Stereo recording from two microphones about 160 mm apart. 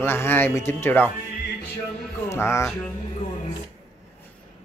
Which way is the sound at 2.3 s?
15° left (ahead or behind).